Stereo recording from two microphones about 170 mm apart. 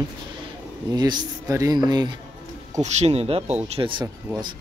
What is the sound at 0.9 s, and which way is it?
Speech, 25° right (ahead or behind).